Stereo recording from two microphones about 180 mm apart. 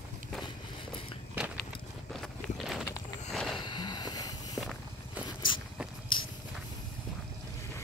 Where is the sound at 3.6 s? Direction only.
25° left (ahead or behind).